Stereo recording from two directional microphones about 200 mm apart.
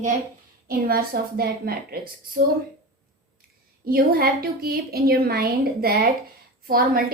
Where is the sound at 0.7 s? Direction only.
50° right (ahead or behind).